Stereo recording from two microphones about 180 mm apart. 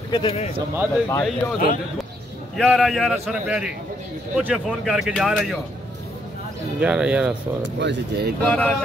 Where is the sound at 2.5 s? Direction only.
Centre (ahead or behind).